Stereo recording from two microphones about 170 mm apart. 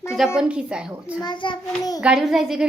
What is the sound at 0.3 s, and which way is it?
Speech, 5° right (ahead or behind).